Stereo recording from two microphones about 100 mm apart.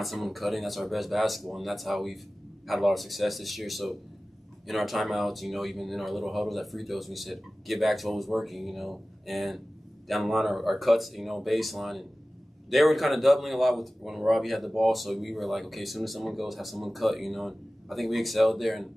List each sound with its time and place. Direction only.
0.0 s speech: centre (ahead or behind)